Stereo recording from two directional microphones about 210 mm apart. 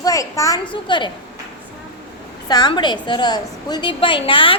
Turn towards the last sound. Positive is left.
turn(degrees=25)  # may be behind; listen again after turning